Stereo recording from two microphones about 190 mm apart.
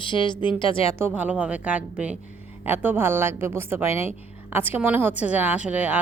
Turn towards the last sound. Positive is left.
turn(degrees=-10)  # may be behind; listen again after turning